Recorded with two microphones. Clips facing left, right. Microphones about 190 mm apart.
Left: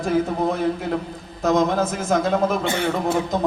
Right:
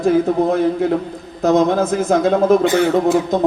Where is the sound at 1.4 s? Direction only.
35° right (ahead or behind).